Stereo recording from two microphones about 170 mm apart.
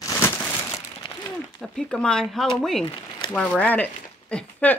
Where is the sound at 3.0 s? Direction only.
30° left (ahead or behind).